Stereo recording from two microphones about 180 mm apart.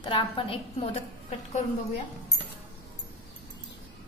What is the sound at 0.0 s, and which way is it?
A woman's voice, 30° left (ahead or behind).